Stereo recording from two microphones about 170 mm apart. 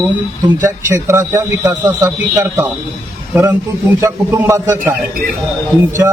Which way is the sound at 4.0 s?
15° right (ahead or behind).